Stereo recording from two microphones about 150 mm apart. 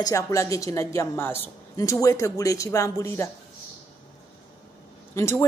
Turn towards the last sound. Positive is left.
turn(degrees=20)  # may be behind; listen again after turning